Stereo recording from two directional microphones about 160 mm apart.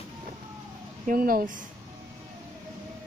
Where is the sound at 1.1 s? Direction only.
60° right (ahead or behind).